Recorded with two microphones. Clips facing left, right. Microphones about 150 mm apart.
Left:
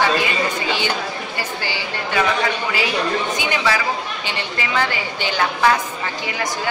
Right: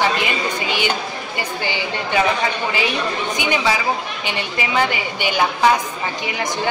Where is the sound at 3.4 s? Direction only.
20° right (ahead or behind).